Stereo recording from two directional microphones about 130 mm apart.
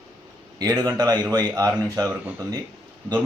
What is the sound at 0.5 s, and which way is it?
A man's voice, 30° right (ahead or behind).